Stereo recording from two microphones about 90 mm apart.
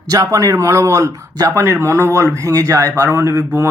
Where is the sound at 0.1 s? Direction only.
35° right (ahead or behind).